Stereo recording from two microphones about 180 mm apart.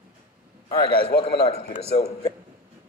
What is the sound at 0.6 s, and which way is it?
Speech, 35° left (ahead or behind).